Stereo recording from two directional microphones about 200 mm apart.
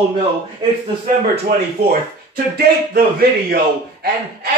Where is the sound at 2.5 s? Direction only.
50° right (ahead or behind).